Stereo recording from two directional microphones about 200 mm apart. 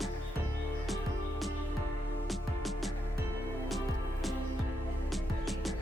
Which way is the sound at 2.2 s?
Centre (ahead or behind).